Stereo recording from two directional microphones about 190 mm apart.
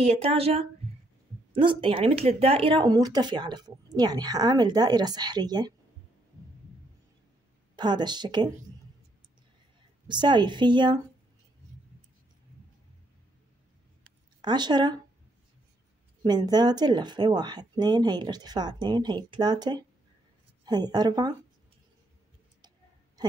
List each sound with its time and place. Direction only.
0.0 s speech: 30° right (ahead or behind)
7.7 s speech: 25° right (ahead or behind)
10.0 s speech: 25° right (ahead or behind)
14.4 s speech: 20° right (ahead or behind)
16.2 s speech: 20° right (ahead or behind)